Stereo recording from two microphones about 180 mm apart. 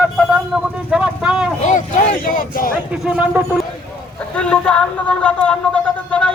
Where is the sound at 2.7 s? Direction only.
5° right (ahead or behind).